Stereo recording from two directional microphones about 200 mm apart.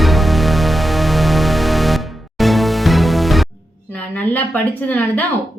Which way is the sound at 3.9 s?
10° left (ahead or behind).